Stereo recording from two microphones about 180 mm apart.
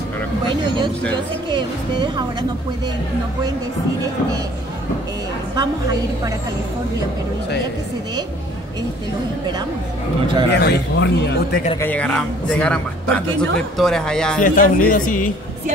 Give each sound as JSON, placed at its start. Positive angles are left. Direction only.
{"t": 0.5, "sound": "speech", "side_deg": -25}
{"t": 5.6, "sound": "speech", "side_deg": -20}
{"t": 10.5, "sound": "speech", "side_deg": 70}
{"t": 11.8, "sound": "a man's voice", "side_deg": 10}
{"t": 14.4, "sound": "speech", "side_deg": 50}